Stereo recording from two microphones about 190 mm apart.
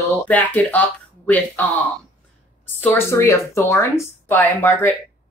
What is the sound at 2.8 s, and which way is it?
Speech, 15° left (ahead or behind).